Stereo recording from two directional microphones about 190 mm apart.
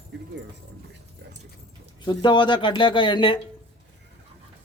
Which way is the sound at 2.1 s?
25° left (ahead or behind).